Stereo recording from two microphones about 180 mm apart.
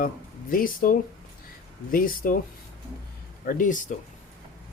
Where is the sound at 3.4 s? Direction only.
45° left (ahead or behind).